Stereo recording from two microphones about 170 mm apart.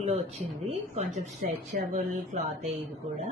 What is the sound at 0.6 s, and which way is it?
Speech, 40° right (ahead or behind).